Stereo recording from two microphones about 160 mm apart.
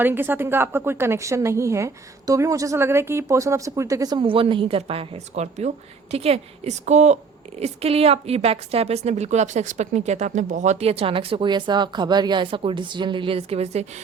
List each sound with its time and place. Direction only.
0.0 s a woman's voice: 15° right (ahead or behind); by 14.0 s 40° right (ahead or behind)